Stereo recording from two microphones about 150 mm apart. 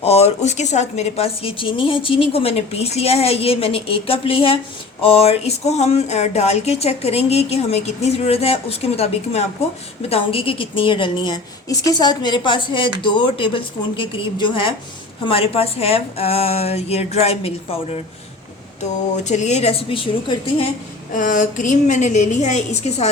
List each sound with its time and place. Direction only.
0.0 s a woman's voice: 45° left (ahead or behind)
21.1 s speech: 60° left (ahead or behind)